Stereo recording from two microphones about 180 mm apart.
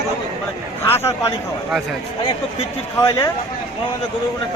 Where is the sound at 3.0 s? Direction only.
15° left (ahead or behind).